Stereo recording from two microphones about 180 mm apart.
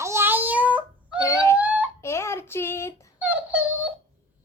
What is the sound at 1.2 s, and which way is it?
Whimper, 15° left (ahead or behind).